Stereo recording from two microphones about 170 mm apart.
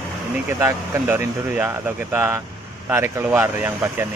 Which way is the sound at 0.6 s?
15° right (ahead or behind).